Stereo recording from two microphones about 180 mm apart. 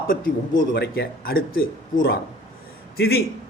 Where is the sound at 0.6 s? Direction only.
65° left (ahead or behind).